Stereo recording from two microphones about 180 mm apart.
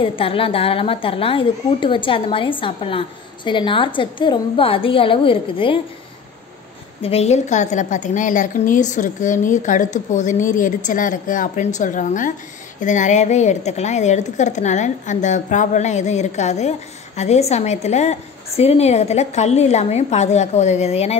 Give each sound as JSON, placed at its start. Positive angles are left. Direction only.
{"t": 0.0, "sound": "a woman's voice", "side_deg": 30}
{"t": 7.0, "sound": "a woman's voice", "side_deg": 35}